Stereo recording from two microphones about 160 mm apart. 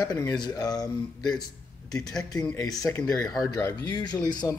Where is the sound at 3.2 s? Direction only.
25° left (ahead or behind).